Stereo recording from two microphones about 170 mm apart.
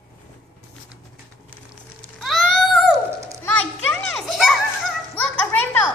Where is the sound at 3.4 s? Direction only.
10° left (ahead or behind).